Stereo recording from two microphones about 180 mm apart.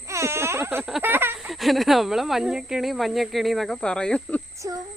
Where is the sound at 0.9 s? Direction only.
5° right (ahead or behind).